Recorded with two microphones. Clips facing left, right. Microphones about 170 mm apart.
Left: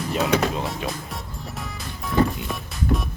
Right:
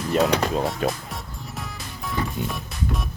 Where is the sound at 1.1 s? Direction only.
Centre (ahead or behind).